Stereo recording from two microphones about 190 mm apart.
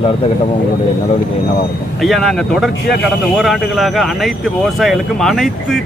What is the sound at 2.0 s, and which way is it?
Speech, centre (ahead or behind).